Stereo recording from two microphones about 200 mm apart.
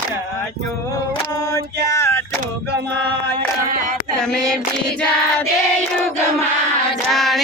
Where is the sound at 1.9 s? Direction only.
15° left (ahead or behind).